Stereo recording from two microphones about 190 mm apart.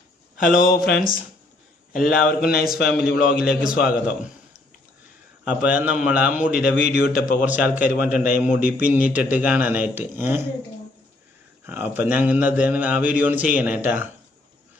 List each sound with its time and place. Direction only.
0.3 s speech: 45° left (ahead or behind)
3.3 s a man's voice: 5° right (ahead or behind)
5.5 s a man's voice: 5° right (ahead or behind)
6.9 s speech: 55° left (ahead or behind)
7.4 s a man's voice: 10° right (ahead or behind)
11.6 s a man's voice: 10° right (ahead or behind)